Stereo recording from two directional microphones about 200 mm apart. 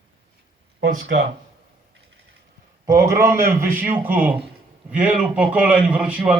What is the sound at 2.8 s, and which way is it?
A man's voice, 15° right (ahead or behind).